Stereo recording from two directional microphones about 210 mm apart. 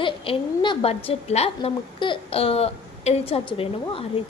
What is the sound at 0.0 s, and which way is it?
A woman's voice, 25° left (ahead or behind).